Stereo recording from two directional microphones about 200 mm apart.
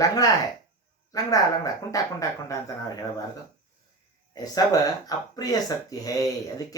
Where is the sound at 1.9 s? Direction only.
15° left (ahead or behind).